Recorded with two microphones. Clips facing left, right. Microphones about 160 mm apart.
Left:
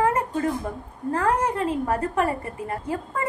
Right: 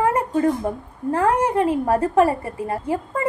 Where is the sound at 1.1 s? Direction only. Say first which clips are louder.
Right 4 dB; 30° right (ahead or behind).